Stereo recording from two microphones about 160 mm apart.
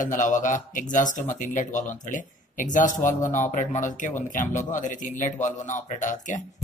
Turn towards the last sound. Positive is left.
turn(degrees=50)  # may be behind; listen again after turning